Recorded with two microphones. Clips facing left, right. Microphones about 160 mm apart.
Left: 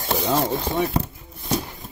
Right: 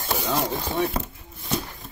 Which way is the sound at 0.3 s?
10° left (ahead or behind).